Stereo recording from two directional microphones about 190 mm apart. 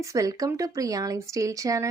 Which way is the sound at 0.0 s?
15° right (ahead or behind).